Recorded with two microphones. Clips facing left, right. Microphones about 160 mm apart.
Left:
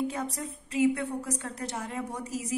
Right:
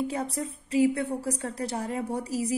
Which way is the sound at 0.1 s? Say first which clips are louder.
Right 3 dB; 30° right (ahead or behind).